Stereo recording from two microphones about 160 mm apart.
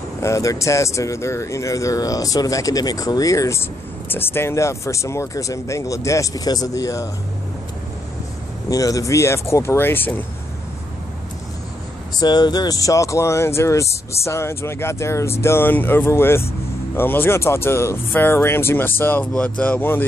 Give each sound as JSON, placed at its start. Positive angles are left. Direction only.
{"t": 0.2, "sound": "speech", "side_deg": 20}
{"t": 8.6, "sound": "speech", "side_deg": 20}
{"t": 12.2, "sound": "speech", "side_deg": 25}